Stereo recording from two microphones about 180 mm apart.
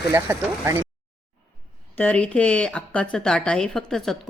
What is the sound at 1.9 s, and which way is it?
Speech, 5° left (ahead or behind).